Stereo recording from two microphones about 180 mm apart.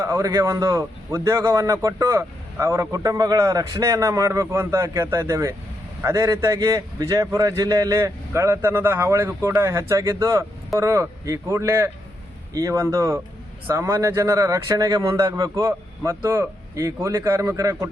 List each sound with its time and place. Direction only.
0.0 s a man's voice: 15° right (ahead or behind)